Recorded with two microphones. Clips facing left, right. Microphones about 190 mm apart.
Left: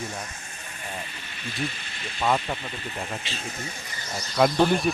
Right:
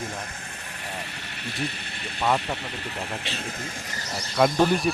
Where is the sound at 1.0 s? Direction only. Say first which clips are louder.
Right 2 dB; 70° right (ahead or behind).